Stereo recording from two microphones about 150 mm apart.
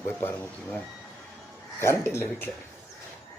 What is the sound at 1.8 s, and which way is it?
Speech, 15° left (ahead or behind).